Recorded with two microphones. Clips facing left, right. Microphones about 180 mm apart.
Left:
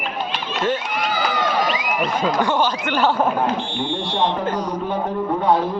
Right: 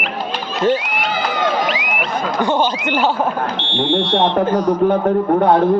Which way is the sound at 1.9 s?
25° right (ahead or behind).